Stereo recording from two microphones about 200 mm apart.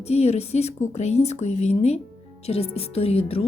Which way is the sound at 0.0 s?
30° left (ahead or behind).